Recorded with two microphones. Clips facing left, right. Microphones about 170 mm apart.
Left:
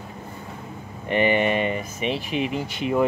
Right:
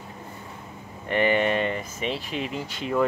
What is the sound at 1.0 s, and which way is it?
Speech, 15° left (ahead or behind).